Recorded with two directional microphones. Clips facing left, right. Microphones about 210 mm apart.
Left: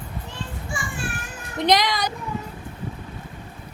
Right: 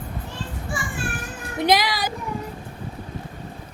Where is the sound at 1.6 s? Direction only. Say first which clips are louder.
Even; 5° right (ahead or behind).